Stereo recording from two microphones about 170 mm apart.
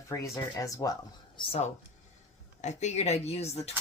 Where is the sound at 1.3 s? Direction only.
35° left (ahead or behind).